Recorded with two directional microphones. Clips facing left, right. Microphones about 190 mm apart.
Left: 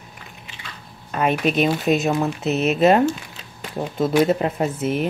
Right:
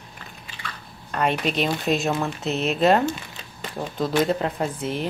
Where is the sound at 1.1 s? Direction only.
5° left (ahead or behind).